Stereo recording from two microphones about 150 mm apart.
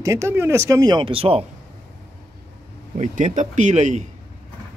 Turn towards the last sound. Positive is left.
turn(degrees=-50)  # may be behind; listen again after turning